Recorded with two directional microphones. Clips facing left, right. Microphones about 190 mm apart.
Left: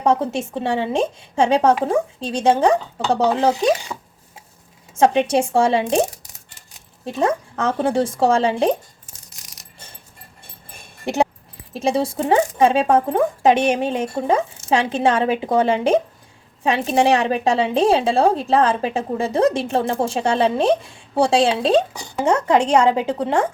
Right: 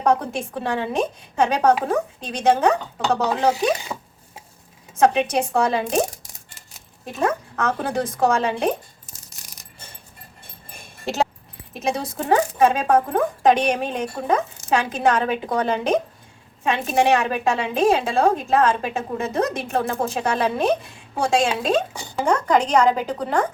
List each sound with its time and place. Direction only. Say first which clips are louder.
0.0 s speech: left 2 dB; 25° left (ahead or behind)
4.9 s speech: left 2 dB; 30° left (ahead or behind)
11.0 s dog: left 4 dB; 15° left (ahead or behind)
11.7 s a woman's voice: left 5 dB; 30° left (ahead or behind)